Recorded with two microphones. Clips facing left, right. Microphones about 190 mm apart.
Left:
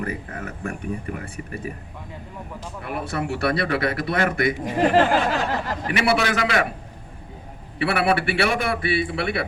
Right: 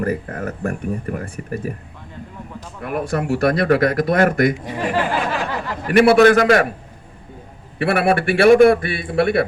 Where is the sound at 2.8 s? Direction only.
45° right (ahead or behind).